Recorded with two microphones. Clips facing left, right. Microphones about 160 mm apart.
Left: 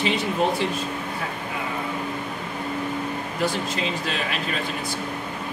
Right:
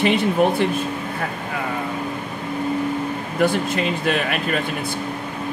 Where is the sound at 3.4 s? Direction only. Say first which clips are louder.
Right 7 dB; 55° right (ahead or behind).